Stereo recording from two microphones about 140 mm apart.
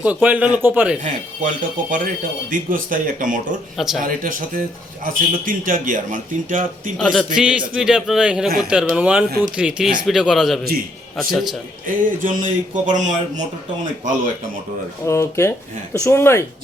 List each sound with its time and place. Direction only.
0.0 s a man's voice: 10° right (ahead or behind)
1.0 s speech: 70° right (ahead or behind)
3.8 s speech: centre (ahead or behind)
4.0 s speech: 75° right (ahead or behind)
6.9 s speech: 5° left (ahead or behind)
7.3 s a man's voice: 5° right (ahead or behind)
11.9 s a man's voice: 70° right (ahead or behind)
15.0 s speech: 20° left (ahead or behind)